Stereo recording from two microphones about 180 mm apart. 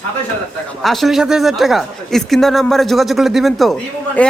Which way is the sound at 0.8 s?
Centre (ahead or behind).